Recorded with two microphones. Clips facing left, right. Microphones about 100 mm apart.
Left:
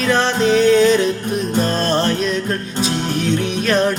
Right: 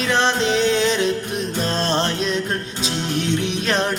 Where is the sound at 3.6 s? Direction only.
25° right (ahead or behind).